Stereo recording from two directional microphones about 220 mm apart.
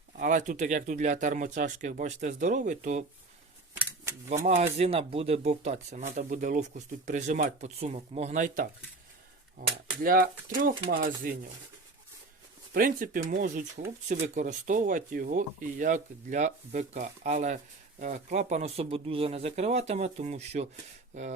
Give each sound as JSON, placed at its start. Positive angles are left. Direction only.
{"t": 0.2, "sound": "speech", "side_deg": -35}
{"t": 4.3, "sound": "speech", "side_deg": -30}
{"t": 10.0, "sound": "speech", "side_deg": -40}
{"t": 12.7, "sound": "speech", "side_deg": -40}